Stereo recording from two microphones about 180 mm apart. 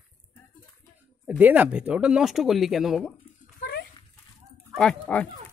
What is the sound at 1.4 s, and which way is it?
Speech, 10° right (ahead or behind).